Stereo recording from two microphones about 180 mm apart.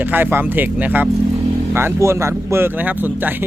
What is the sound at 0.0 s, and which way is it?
Speech, 10° right (ahead or behind).